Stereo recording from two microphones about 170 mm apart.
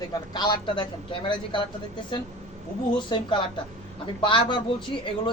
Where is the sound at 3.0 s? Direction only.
25° left (ahead or behind).